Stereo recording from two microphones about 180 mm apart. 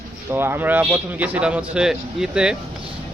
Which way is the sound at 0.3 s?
10° right (ahead or behind).